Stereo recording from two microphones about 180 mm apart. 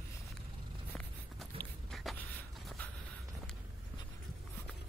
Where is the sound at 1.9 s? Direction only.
Centre (ahead or behind).